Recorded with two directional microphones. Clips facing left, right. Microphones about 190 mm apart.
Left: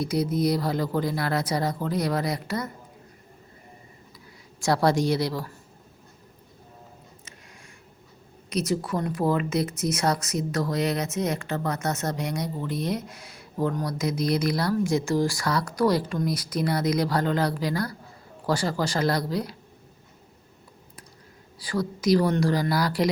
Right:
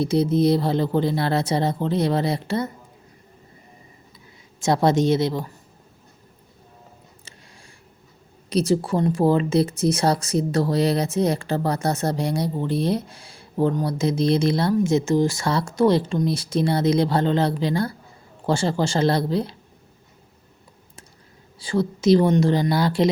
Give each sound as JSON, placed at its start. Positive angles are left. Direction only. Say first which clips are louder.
{"t": 0.0, "sound": "speech", "louder": "right 6 dB", "side_deg": -25}
{"t": 4.6, "sound": "speech", "louder": "right 3 dB", "side_deg": -20}
{"t": 8.4, "sound": "speech", "louder": "right 6 dB", "side_deg": -30}
{"t": 21.6, "sound": "speech", "louder": "right 5 dB", "side_deg": -25}